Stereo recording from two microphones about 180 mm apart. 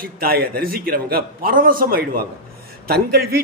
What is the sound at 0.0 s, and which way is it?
A man's voice, 55° right (ahead or behind).